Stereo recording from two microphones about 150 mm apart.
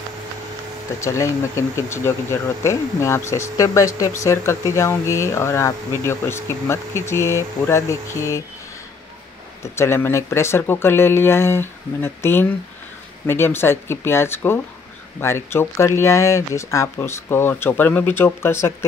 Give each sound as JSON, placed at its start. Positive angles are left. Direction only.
{"t": 1.0, "sound": "speech", "side_deg": 20}
{"t": 9.6, "sound": "speech", "side_deg": 15}